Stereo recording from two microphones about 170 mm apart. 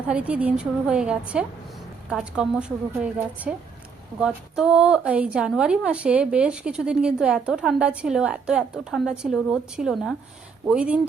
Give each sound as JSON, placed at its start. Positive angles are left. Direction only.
{"t": 0.1, "sound": "a woman's voice", "side_deg": -10}